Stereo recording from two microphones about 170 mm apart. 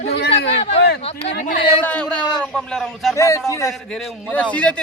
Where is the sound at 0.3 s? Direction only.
90° left.